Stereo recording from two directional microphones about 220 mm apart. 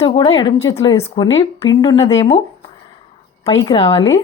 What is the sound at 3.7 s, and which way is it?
Speech, 25° left (ahead or behind).